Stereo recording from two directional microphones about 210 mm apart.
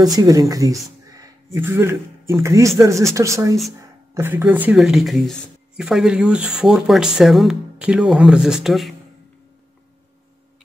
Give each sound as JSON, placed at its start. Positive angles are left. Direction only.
{"t": 0.0, "sound": "speech", "side_deg": -20}
{"t": 1.0, "sound": "a sound", "side_deg": -15}
{"t": 2.4, "sound": "speech", "side_deg": -15}